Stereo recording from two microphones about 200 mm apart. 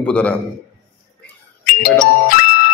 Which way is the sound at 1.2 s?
45° left (ahead or behind).